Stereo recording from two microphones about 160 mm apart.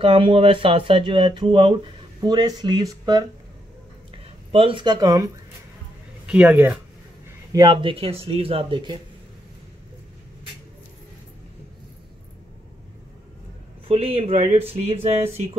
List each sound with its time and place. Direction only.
0.0 s speech: 35° right (ahead or behind)
4.5 s speech: 35° right (ahead or behind)
6.2 s speech: 5° right (ahead or behind)
7.5 s speech: 30° right (ahead or behind)
13.8 s speech: 35° right (ahead or behind)